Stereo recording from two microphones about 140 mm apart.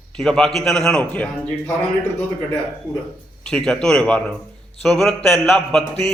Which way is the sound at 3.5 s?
5° left (ahead or behind).